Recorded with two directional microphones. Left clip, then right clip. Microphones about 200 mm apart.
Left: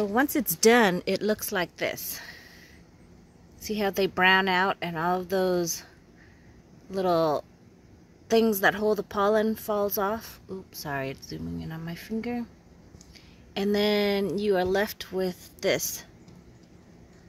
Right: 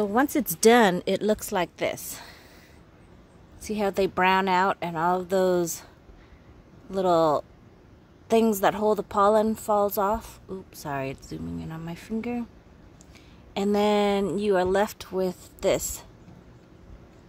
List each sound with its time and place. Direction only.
0.0 s a woman's voice: 5° right (ahead or behind)
3.6 s a woman's voice: 5° right (ahead or behind)
6.9 s a woman's voice: 5° right (ahead or behind)
13.5 s a woman's voice: 5° right (ahead or behind)